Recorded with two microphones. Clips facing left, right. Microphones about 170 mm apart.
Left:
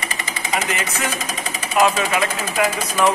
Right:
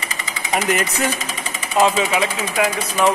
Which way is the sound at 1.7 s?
20° right (ahead or behind).